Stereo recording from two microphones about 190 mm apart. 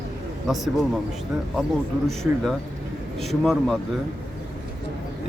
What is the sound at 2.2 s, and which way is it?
Speech, centre (ahead or behind).